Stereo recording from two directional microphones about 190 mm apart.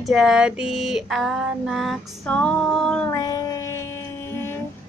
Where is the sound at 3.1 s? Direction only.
20° left (ahead or behind).